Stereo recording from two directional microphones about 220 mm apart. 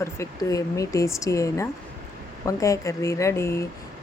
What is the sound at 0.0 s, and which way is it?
Speech, 15° left (ahead or behind).